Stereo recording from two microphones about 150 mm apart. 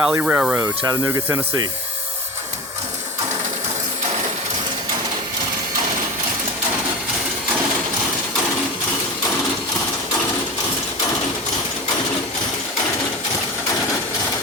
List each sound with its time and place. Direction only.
0.0 s speech: 10° right (ahead or behind)
0.6 s speech: 20° right (ahead or behind)